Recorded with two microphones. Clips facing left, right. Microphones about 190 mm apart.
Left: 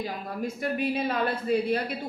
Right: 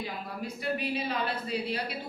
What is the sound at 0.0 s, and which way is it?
Speech, 50° left (ahead or behind).